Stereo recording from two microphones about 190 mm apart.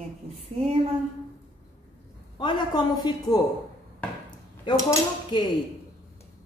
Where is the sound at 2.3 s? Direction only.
25° left (ahead or behind).